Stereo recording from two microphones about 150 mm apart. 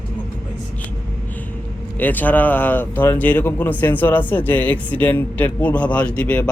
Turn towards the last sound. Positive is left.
turn(degrees=10)  # may be behind; listen again after turning